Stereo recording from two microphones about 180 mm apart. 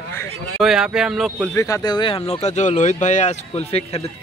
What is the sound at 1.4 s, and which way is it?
Speech, 15° left (ahead or behind).